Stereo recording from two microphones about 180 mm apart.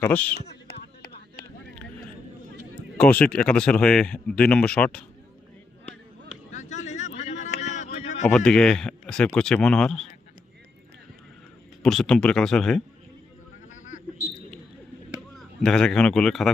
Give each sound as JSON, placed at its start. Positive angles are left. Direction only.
{"t": 0.0, "sound": "speech", "side_deg": 10}
{"t": 3.0, "sound": "speech", "side_deg": 5}
{"t": 6.5, "sound": "a sound", "side_deg": 40}
{"t": 8.3, "sound": "speech", "side_deg": 5}
{"t": 11.8, "sound": "speech", "side_deg": 0}
{"t": 15.4, "sound": "a man's voice", "side_deg": 5}